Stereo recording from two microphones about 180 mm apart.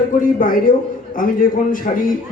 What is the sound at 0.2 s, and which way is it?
A man's voice, 50° left (ahead or behind).